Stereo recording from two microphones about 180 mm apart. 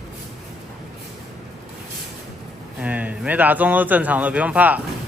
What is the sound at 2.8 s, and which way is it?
A man's voice, 10° right (ahead or behind).